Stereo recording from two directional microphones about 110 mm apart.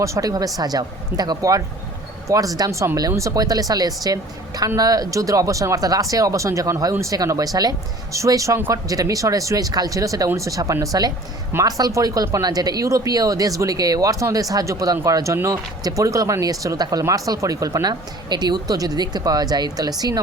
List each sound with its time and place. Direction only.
0.0 s speech: 30° right (ahead or behind)